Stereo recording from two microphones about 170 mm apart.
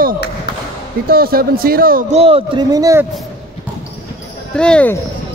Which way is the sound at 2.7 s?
20° right (ahead or behind).